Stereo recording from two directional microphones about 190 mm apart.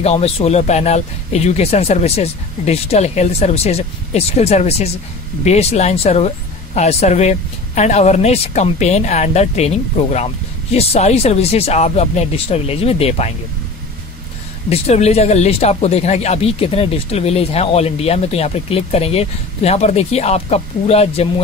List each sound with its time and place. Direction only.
0.0 s speech: 30° left (ahead or behind)
14.7 s speech: 35° left (ahead or behind)